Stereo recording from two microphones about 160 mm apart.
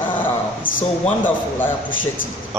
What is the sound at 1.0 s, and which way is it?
Speech, 10° left (ahead or behind).